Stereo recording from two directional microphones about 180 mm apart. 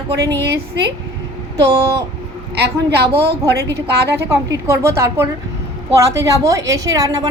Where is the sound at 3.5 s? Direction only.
65° right (ahead or behind).